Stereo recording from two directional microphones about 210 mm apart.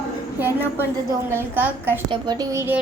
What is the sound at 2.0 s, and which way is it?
Child singing, 20° right (ahead or behind).